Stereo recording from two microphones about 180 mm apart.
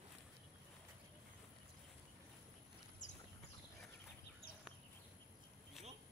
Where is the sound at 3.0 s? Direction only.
45° left (ahead or behind).